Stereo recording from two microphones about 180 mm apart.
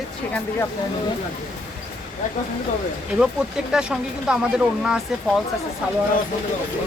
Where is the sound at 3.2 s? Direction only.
5° right (ahead or behind).